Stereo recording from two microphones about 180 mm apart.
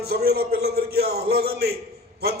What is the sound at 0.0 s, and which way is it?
A man's voice, 60° right (ahead or behind).